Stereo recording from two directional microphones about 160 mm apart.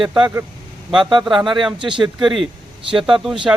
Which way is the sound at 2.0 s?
Centre (ahead or behind).